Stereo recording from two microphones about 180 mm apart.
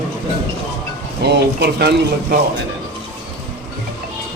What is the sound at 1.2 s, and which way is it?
Speech, 65° right (ahead or behind).